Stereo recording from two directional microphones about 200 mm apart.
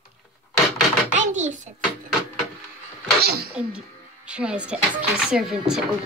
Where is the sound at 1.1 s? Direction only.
35° right (ahead or behind).